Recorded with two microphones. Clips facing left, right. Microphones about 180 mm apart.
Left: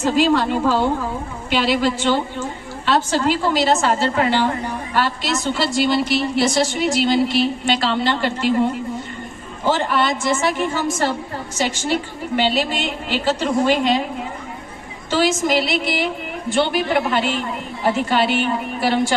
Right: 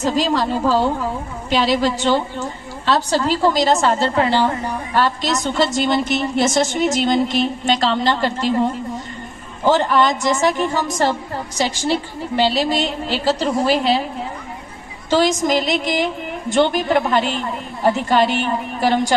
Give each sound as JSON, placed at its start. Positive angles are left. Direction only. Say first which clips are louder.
{"t": 0.0, "sound": "a woman's voice", "louder": "left 2 dB", "side_deg": -40}
{"t": 9.6, "sound": "a woman's voice", "louder": "right 3 dB", "side_deg": -40}
{"t": 12.4, "sound": "a woman's voice", "louder": "right 3 dB", "side_deg": -40}
{"t": 15.1, "sound": "a woman's voice", "louder": "right 2 dB", "side_deg": -40}